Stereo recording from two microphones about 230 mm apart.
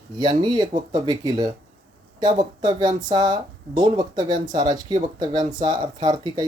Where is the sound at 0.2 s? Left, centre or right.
Centre.